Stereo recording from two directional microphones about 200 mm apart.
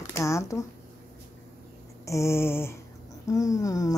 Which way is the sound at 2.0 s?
15° left (ahead or behind).